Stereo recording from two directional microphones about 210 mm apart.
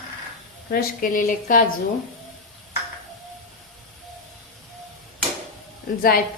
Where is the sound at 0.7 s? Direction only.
40° left (ahead or behind).